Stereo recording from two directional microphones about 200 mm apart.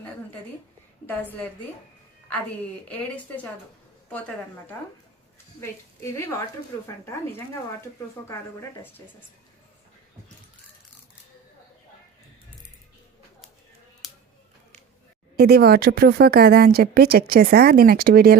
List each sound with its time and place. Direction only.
1.0 s speech: 10° left (ahead or behind)
2.9 s speech: 5° left (ahead or behind)
8.2 s speech: 15° left (ahead or behind)
15.4 s speech: 50° right (ahead or behind)